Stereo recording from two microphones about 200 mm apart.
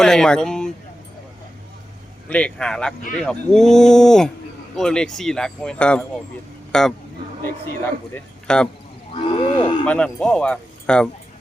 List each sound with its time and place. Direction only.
0.0 s speech: 5° left (ahead or behind)
2.3 s speech: 5° left (ahead or behind)
8.1 s speech: 5° left (ahead or behind)
9.1 s wild animals: 25° left (ahead or behind)
9.8 s speech: 5° left (ahead or behind)